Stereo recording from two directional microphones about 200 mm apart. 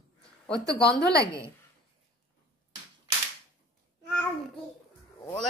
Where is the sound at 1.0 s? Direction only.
55° left (ahead or behind).